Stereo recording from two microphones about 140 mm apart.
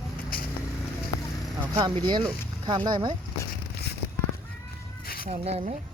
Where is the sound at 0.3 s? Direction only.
90° left.